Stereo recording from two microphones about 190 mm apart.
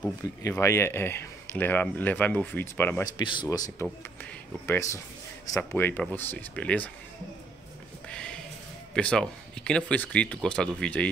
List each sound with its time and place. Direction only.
0.4 s speech: 15° left (ahead or behind)
3.2 s speech: 25° left (ahead or behind); by 6.9 s 5° left (ahead or behind)
8.1 s a sound: 5° left (ahead or behind)
8.9 s speech: 5° left (ahead or behind)